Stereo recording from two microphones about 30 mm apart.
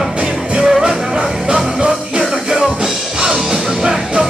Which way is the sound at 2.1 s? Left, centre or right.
Centre.